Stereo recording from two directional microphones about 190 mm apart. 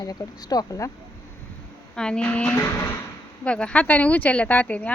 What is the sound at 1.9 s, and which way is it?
Speech, 5° left (ahead or behind).